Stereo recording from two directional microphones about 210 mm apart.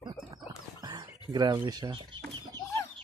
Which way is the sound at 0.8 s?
20° right (ahead or behind).